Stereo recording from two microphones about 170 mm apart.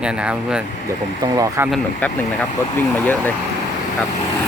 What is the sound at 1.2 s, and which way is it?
Speech, 20° right (ahead or behind).